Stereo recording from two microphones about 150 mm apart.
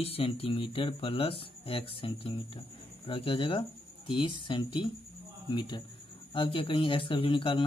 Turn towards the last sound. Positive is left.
turn(degrees=35)  # may be behind; listen again after turning